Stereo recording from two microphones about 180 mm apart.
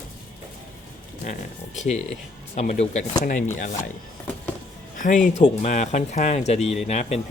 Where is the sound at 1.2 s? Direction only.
40° left (ahead or behind).